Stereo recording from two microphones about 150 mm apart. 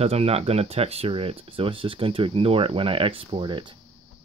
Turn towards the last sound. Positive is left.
turn(degrees=-35)  # may be behind; listen again after turning